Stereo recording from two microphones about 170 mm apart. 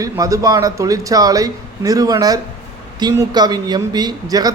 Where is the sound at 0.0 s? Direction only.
20° right (ahead or behind).